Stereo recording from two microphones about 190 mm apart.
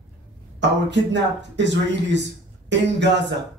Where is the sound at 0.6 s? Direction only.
70° right (ahead or behind).